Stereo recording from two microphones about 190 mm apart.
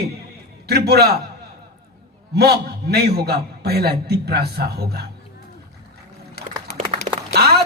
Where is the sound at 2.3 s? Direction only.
60° right (ahead or behind).